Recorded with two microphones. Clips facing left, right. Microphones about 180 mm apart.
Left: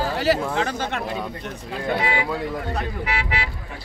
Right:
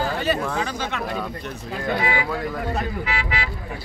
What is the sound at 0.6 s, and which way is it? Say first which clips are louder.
Speech: left 2 dB; 50° left (ahead or behind).